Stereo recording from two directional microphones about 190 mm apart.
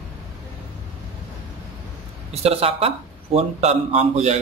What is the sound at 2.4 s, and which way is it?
A man's voice, 30° right (ahead or behind).